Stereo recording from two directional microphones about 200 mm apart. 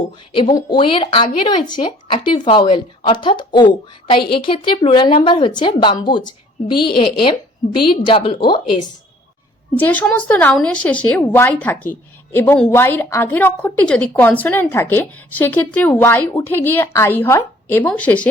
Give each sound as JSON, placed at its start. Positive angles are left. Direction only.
{"t": 0.3, "sound": "speech", "side_deg": 25}
{"t": 9.7, "sound": "a woman's voice", "side_deg": 10}